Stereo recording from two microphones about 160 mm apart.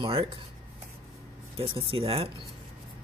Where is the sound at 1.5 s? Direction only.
35° right (ahead or behind).